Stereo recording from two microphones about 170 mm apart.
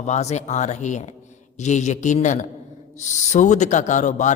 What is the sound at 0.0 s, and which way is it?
A man's voice, 40° left (ahead or behind).